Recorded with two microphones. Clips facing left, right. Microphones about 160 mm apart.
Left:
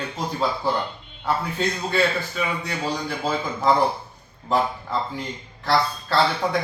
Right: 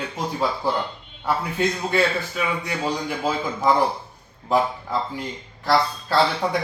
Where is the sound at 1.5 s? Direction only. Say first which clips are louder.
Right 2 dB; 10° right (ahead or behind).